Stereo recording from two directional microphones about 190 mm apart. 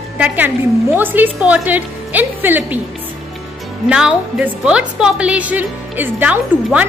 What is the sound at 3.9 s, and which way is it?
Speech, 5° right (ahead or behind).